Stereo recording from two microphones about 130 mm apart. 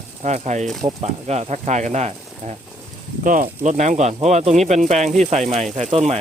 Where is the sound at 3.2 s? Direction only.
90° right; by 6.1 s 55° right (ahead or behind).